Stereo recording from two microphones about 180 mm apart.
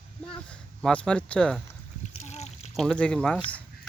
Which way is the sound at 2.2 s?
40° left (ahead or behind).